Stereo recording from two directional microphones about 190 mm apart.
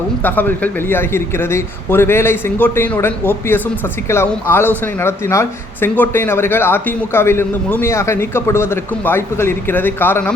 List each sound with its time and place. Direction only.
0.2 s speech: 10° left (ahead or behind)